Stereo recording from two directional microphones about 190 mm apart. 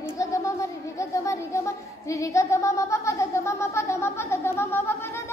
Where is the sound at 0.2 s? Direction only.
15° left (ahead or behind).